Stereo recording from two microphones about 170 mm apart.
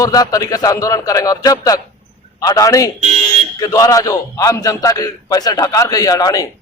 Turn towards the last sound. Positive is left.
turn(degrees=20)  # may be behind; listen again after turning